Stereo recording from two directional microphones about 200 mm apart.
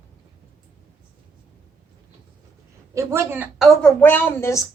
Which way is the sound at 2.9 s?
15° right (ahead or behind).